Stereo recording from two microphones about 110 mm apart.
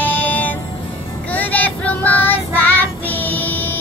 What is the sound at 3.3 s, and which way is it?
Music, 15° left (ahead or behind).